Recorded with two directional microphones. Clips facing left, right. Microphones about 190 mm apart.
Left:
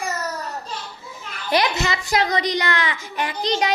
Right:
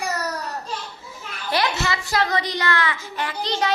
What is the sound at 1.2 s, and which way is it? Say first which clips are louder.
A child's voice: left 3 dB; 15° left (ahead or behind).